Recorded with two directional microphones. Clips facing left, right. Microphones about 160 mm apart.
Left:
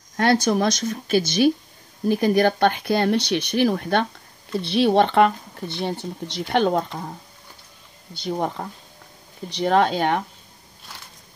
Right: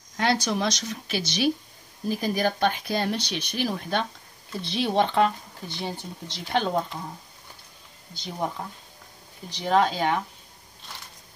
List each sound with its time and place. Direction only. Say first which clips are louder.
0.2 s speech: left 6 dB; 50° left (ahead or behind)
2.0 s speech: left 7 dB; 65° left (ahead or behind)
8.1 s speech: left 6 dB; 65° left (ahead or behind)
9.5 s speech: left 4 dB; 65° left (ahead or behind)